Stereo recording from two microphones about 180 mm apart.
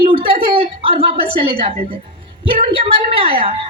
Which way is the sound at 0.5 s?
30° right (ahead or behind).